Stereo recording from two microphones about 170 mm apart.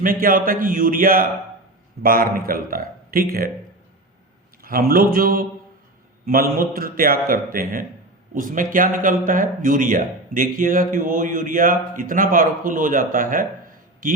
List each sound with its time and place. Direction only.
0.0 s a man's voice: 55° right (ahead or behind)
4.6 s a man's voice: 60° right (ahead or behind)